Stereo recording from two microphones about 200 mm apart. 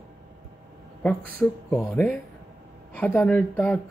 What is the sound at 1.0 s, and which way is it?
Speech, 5° left (ahead or behind).